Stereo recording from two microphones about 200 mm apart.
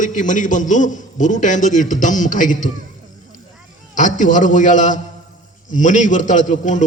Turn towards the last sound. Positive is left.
turn(degrees=40)  # may be behind; listen again after turning